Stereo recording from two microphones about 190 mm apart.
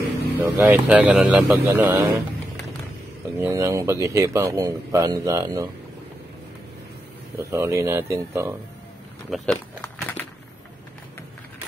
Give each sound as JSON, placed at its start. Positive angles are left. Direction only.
{"t": 0.4, "sound": "speech", "side_deg": -10}
{"t": 1.8, "sound": "speech", "side_deg": -20}
{"t": 3.3, "sound": "speech", "side_deg": -15}
{"t": 7.3, "sound": "speech", "side_deg": -15}
{"t": 9.3, "sound": "speech", "side_deg": 5}